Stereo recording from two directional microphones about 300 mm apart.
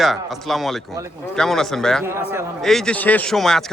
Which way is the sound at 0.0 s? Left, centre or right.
Centre.